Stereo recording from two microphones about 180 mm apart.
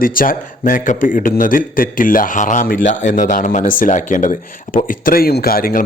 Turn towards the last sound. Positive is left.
turn(degrees=55)  # may be behind; listen again after turning